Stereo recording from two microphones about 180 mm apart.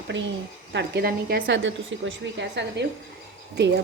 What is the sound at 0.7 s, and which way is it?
A woman's voice, 70° right (ahead or behind).